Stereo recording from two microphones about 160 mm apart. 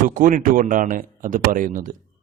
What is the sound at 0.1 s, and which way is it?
A man's voice, 55° right (ahead or behind).